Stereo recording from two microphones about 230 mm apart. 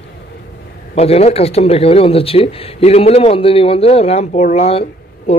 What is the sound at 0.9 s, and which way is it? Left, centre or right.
Speech, left.